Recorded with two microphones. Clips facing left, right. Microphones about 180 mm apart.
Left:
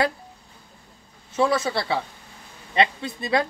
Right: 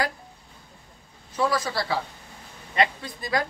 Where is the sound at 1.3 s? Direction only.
25° left (ahead or behind).